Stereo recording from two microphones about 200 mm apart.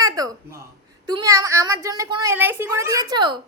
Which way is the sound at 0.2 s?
20° right (ahead or behind).